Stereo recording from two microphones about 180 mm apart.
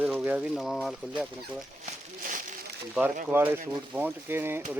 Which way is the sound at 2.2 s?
45° right (ahead or behind).